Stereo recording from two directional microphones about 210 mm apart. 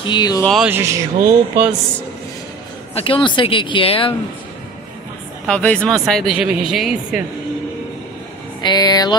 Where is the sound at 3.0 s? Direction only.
25° left (ahead or behind).